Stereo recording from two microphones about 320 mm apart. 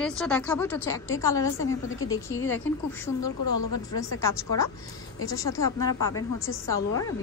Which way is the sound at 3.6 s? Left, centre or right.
Left.